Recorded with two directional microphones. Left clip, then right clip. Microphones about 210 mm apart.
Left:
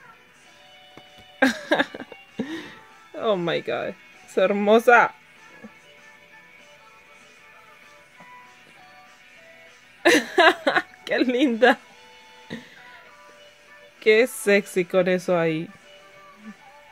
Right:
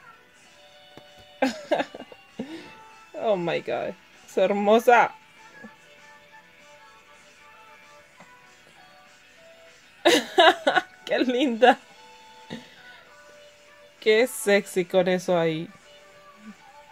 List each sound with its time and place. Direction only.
1.4 s music: 25° left (ahead or behind); by 5.1 s 5° left (ahead or behind)
10.0 s music: 5° left (ahead or behind)
13.9 s speech: 5° left (ahead or behind)